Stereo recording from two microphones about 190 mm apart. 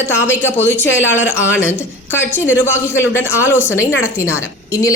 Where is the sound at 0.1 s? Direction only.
10° left (ahead or behind).